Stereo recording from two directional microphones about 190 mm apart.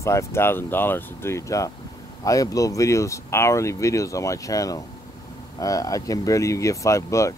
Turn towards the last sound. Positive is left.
turn(degrees=15)  # may be behind; listen again after turning